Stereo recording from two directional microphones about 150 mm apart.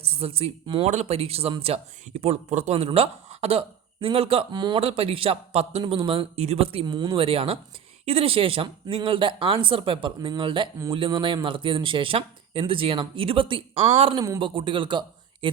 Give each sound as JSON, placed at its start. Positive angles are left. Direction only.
{"t": 0.0, "sound": "speech", "side_deg": -40}
{"t": 7.3, "sound": "speech", "side_deg": -40}